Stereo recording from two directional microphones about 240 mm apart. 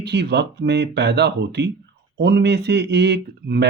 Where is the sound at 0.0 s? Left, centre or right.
Right.